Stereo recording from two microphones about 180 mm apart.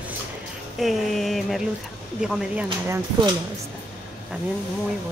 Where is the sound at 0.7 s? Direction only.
Centre (ahead or behind).